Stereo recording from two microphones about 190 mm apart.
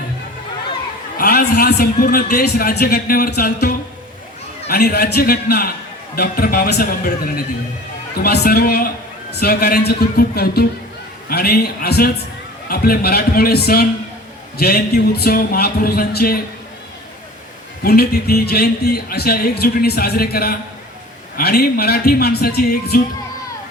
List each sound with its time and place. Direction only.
1.2 s a man's voice: 55° left (ahead or behind)
4.7 s a man's voice: 55° left (ahead or behind)
8.2 s a man's voice: 55° left (ahead or behind)
17.8 s a man's voice: 55° left (ahead or behind)